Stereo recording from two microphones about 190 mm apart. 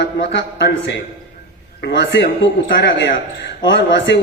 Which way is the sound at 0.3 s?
65° left (ahead or behind).